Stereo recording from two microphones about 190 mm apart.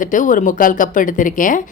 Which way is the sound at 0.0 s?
45° left (ahead or behind).